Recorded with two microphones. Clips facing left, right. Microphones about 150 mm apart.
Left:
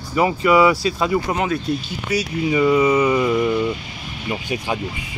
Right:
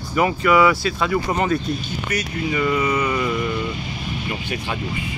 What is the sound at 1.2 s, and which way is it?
Speech, centre (ahead or behind).